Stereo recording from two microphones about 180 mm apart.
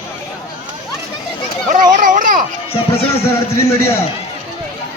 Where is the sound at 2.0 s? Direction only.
45° right (ahead or behind).